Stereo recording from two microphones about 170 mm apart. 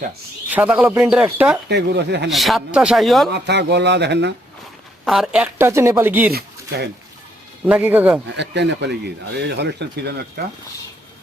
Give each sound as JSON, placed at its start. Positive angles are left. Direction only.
{"t": 0.5, "sound": "speech", "side_deg": -10}
{"t": 1.6, "sound": "speech", "side_deg": -80}
{"t": 2.3, "sound": "speech", "side_deg": 0}
{"t": 3.3, "sound": "speech", "side_deg": -90}
{"t": 5.0, "sound": "speech", "side_deg": 0}
{"t": 5.5, "sound": "speech", "side_deg": -15}
{"t": 6.3, "sound": "speech", "side_deg": -70}
{"t": 7.6, "sound": "speech", "side_deg": -10}
{"t": 8.3, "sound": "speech", "side_deg": -90}